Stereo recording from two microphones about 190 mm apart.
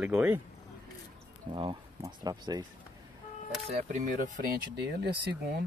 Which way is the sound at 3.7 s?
35° right (ahead or behind).